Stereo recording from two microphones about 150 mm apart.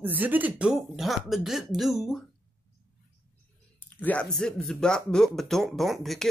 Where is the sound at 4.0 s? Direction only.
10° left (ahead or behind).